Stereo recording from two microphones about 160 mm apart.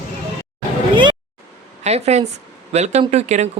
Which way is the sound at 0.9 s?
30° right (ahead or behind).